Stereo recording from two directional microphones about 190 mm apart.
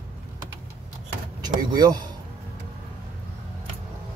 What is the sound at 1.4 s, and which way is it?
Speech, 20° right (ahead or behind).